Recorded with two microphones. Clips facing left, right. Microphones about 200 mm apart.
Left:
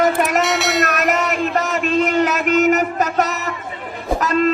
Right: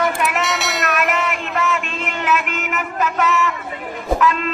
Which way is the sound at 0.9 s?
40° left (ahead or behind).